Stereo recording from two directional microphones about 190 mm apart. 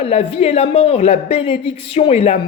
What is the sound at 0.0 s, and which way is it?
A woman's voice, 35° left (ahead or behind).